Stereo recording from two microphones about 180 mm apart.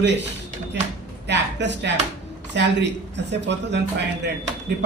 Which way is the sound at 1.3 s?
75° right (ahead or behind).